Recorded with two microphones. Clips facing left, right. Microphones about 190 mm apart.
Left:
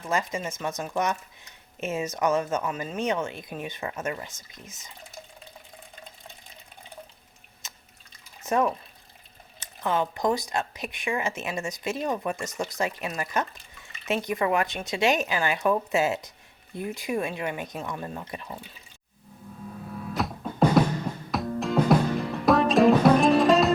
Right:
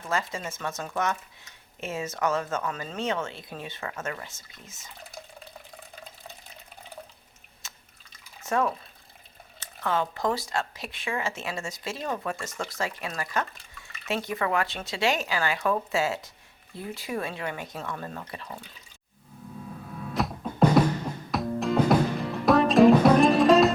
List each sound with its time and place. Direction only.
0.1 s speech: 20° left (ahead or behind)
7.6 s drip: 20° left (ahead or behind)
8.4 s speech: 20° left (ahead or behind)
20.1 s music: centre (ahead or behind)